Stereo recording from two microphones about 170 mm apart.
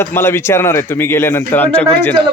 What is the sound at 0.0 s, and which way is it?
Speech, 15° left (ahead or behind).